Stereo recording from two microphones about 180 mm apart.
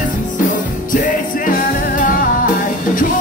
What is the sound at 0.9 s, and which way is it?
Music, 45° left (ahead or behind).